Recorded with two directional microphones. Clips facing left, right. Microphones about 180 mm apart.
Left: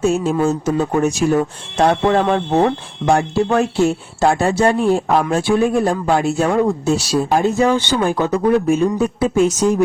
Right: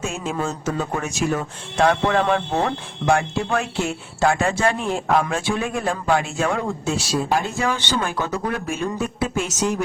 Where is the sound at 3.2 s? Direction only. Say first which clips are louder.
Left 7 dB; 35° left (ahead or behind).